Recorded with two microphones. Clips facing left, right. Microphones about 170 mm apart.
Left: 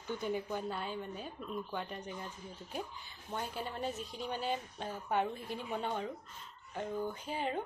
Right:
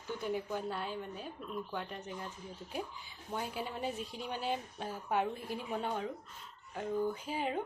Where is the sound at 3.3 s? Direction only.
5° right (ahead or behind).